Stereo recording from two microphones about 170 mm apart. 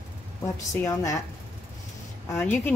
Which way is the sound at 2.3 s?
15° left (ahead or behind).